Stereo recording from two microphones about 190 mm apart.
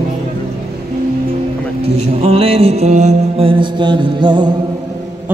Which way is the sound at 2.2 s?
30° right (ahead or behind).